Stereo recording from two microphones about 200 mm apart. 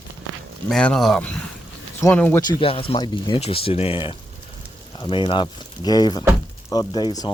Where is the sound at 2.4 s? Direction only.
25° left (ahead or behind).